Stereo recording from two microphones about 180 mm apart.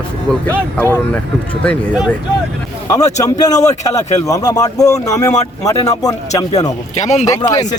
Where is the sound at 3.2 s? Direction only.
20° left (ahead or behind).